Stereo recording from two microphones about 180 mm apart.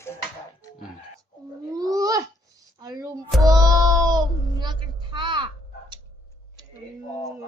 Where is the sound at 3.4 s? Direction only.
20° right (ahead or behind).